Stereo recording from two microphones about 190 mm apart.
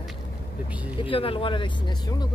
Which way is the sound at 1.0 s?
30° left (ahead or behind).